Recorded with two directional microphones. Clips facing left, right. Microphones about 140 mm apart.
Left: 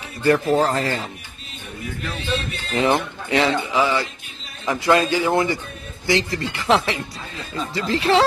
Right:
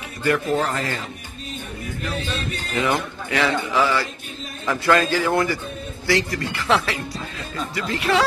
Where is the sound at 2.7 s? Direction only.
25° left (ahead or behind).